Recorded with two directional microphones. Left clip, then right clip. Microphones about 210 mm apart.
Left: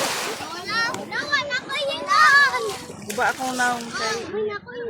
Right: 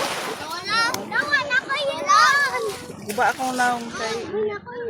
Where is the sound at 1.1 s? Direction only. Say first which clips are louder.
Right 4 dB; 10° right (ahead or behind).